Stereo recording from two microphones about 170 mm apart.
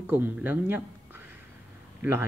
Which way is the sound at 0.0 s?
10° right (ahead or behind).